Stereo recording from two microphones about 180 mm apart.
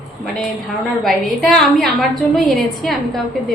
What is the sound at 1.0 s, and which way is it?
A woman's voice, centre (ahead or behind).